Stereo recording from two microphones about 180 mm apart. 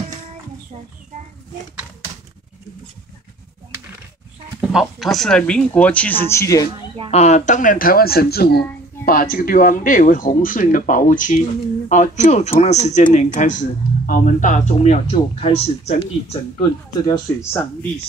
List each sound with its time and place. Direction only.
4.6 s speech: centre (ahead or behind); by 6.7 s 15° left (ahead or behind)
7.1 s speech: 40° left (ahead or behind)
17.1 s speech: 15° left (ahead or behind)